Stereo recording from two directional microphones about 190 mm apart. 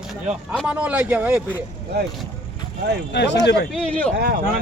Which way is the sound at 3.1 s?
65° left (ahead or behind).